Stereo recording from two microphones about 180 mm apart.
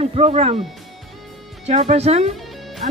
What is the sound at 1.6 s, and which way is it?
Speech, 35° right (ahead or behind).